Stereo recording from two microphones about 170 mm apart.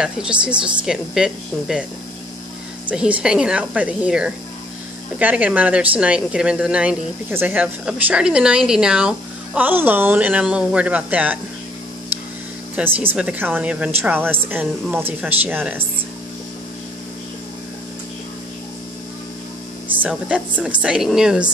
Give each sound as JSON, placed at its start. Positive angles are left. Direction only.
{"t": 0.0, "sound": "speech", "side_deg": -5}
{"t": 2.9, "sound": "a woman's voice", "side_deg": -5}
{"t": 12.7, "sound": "a woman's voice", "side_deg": -10}
{"t": 20.0, "sound": "speech", "side_deg": -5}